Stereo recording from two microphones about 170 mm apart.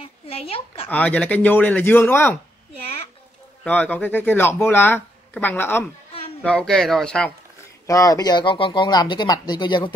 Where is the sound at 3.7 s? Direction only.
10° left (ahead or behind).